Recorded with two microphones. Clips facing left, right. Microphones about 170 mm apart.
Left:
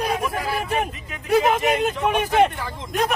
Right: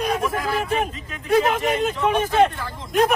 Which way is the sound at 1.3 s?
15° left (ahead or behind).